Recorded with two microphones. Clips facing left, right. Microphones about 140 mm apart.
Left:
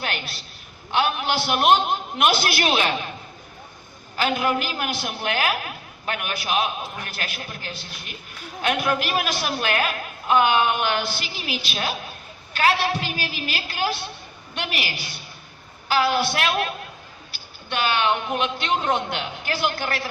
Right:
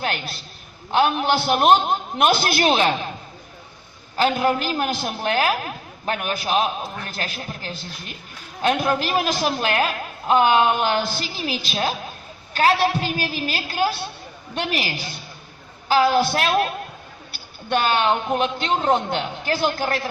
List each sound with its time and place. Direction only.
0.9 s a woman's voice: 40° right (ahead or behind)
4.2 s a woman's voice: 35° right (ahead or behind)
17.7 s a woman's voice: 45° right (ahead or behind)